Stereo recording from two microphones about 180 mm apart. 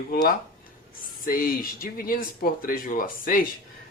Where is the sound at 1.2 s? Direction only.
55° left (ahead or behind).